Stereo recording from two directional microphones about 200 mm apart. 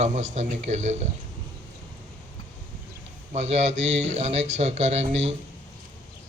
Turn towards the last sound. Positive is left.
turn(degrees=-35)  # may be behind; listen again after turning